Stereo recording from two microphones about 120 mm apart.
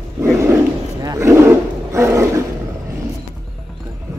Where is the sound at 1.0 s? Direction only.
30° right (ahead or behind).